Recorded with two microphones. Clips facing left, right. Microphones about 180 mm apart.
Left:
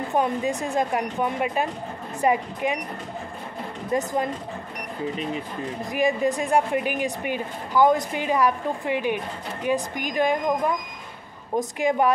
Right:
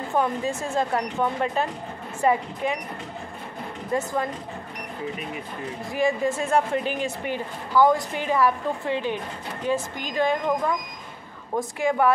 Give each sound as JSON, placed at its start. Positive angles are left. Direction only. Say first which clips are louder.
{"t": 0.1, "sound": "speech", "louder": "even", "side_deg": 20}
{"t": 3.9, "sound": "speech", "louder": "left 1 dB", "side_deg": 20}
{"t": 5.9, "sound": "speech", "louder": "left 1 dB", "side_deg": 15}